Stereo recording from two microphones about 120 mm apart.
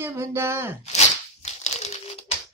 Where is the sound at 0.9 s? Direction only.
65° left (ahead or behind).